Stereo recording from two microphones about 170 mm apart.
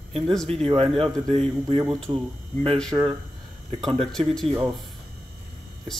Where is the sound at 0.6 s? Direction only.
35° right (ahead or behind).